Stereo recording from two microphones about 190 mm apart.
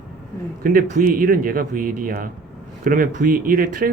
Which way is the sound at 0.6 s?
50° right (ahead or behind).